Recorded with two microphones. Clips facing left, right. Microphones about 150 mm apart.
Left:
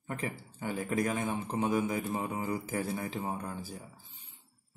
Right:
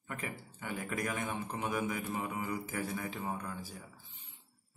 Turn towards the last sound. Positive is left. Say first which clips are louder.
# left 3 dB
turn(degrees=35)  # may be behind; listen again after turning